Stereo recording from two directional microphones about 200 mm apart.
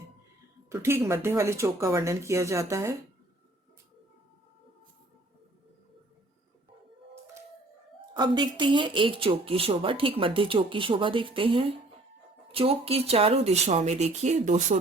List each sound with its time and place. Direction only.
0.7 s speech: 15° right (ahead or behind)
8.1 s speech: 20° right (ahead or behind)